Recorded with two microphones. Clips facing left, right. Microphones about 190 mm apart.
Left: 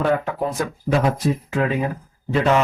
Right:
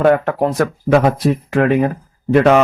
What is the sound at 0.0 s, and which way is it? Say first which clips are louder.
Speech: right 7 dB; 50° right (ahead or behind).